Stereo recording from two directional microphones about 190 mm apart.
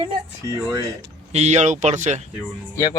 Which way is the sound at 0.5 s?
20° right (ahead or behind).